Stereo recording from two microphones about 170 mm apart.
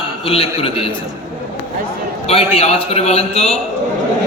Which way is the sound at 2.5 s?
35° left (ahead or behind).